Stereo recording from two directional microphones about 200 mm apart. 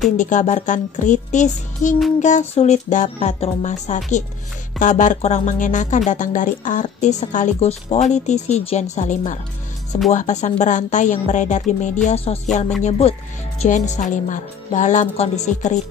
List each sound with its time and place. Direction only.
0.0 s speech: 40° left (ahead or behind)